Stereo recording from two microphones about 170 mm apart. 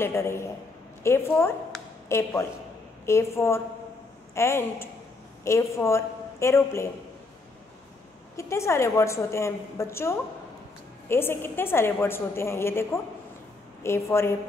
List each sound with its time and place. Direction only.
0.0 s a woman's voice: 15° left (ahead or behind)
8.4 s a woman's voice: 15° left (ahead or behind)